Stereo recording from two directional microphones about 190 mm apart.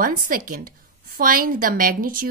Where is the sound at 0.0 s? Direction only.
45° right (ahead or behind).